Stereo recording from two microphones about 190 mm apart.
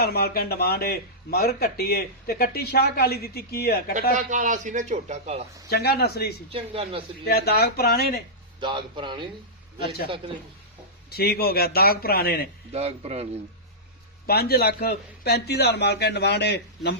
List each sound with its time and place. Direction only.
0.0 s a man's voice: 55° left (ahead or behind)
4.1 s a man's voice: 40° right (ahead or behind)
5.6 s a man's voice: 55° left (ahead or behind)
6.5 s speech: 30° right (ahead or behind)
7.3 s a man's voice: 55° left (ahead or behind)
8.6 s speech: 25° right (ahead or behind)
11.1 s a man's voice: 55° left (ahead or behind)
12.7 s a man's voice: 30° right (ahead or behind)
14.3 s a man's voice: 55° left (ahead or behind)